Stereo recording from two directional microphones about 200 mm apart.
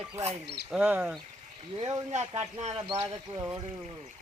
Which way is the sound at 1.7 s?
30° right (ahead or behind).